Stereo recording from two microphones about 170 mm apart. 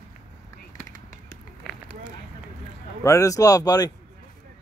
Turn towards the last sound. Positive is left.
turn(degrees=20)  # may be behind; listen again after turning